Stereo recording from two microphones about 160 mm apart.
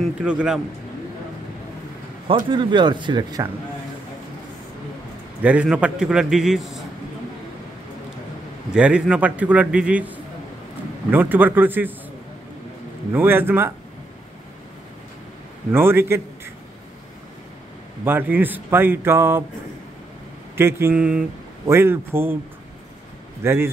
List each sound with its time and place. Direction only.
0.2 s a man's voice: 5° right (ahead or behind)
2.5 s speech: 30° right (ahead or behind)
5.4 s a man's voice: 10° right (ahead or behind)
8.7 s a man's voice: 5° right (ahead or behind)
13.1 s a man's voice: 15° right (ahead or behind)
15.7 s a man's voice: 15° right (ahead or behind)
18.0 s a man's voice: 10° right (ahead or behind)
20.5 s a man's voice: 15° right (ahead or behind)
23.4 s a man's voice: 15° right (ahead or behind)